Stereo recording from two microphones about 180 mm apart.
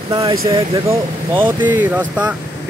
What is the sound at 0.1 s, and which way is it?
Speech, 20° right (ahead or behind).